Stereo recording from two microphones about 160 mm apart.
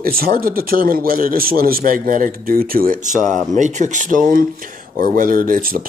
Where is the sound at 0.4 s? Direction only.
65° right (ahead or behind).